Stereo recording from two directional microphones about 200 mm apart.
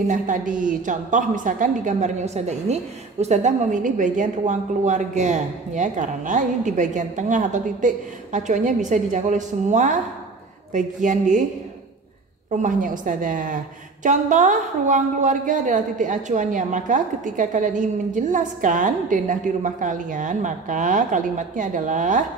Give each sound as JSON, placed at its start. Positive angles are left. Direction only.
{"t": 0.1, "sound": "a woman's voice", "side_deg": -40}
{"t": 12.4, "sound": "a woman's voice", "side_deg": -40}